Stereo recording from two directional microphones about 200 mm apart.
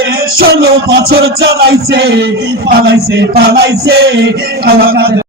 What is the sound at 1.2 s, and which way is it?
Music, 65° right (ahead or behind).